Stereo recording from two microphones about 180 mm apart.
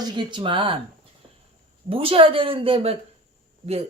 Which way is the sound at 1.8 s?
30° right (ahead or behind).